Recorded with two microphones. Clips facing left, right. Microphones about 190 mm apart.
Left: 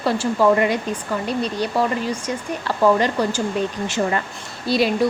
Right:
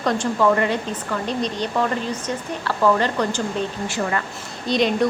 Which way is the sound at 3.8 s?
20° left (ahead or behind).